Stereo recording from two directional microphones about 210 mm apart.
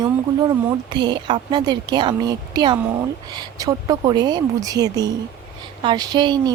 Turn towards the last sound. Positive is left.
turn(degrees=-20)  # may be behind; listen again after turning